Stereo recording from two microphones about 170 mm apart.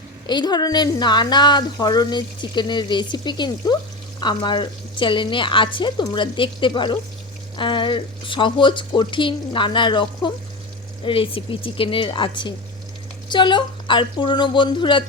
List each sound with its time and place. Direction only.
0.3 s speech: 25° left (ahead or behind)